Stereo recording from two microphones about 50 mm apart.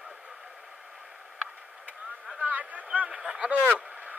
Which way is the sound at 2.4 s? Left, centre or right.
Right.